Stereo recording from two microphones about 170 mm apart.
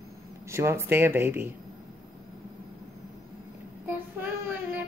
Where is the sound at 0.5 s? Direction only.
15° right (ahead or behind).